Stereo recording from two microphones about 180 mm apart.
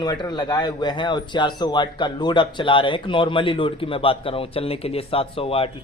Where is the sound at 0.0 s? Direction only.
20° left (ahead or behind).